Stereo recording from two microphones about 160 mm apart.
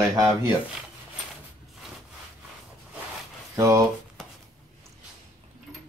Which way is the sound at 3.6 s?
20° right (ahead or behind).